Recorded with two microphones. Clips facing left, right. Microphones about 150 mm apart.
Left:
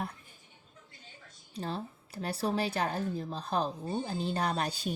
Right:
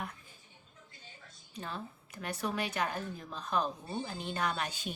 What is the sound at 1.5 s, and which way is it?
A woman's voice, 35° left (ahead or behind).